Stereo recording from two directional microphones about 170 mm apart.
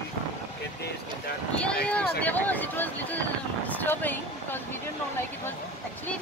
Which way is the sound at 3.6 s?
10° left (ahead or behind).